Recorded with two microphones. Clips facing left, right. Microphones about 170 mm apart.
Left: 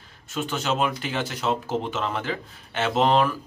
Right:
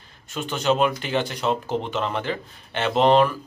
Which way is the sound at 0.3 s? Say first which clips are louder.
Right 4 dB; centre (ahead or behind).